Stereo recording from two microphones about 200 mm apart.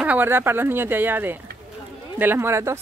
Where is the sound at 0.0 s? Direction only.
10° right (ahead or behind).